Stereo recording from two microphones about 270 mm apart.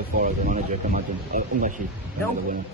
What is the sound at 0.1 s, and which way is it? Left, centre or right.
Speech, right.